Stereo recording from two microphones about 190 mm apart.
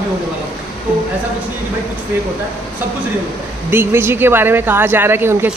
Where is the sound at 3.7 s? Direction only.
10° right (ahead or behind).